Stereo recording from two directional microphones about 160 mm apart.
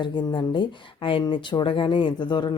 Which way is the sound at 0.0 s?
30° left (ahead or behind).